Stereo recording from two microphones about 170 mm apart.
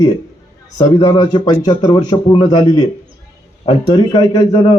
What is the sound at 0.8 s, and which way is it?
Speech, 25° left (ahead or behind).